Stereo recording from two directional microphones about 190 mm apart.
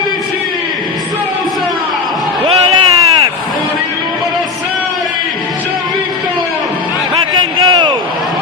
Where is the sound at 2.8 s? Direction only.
15° right (ahead or behind).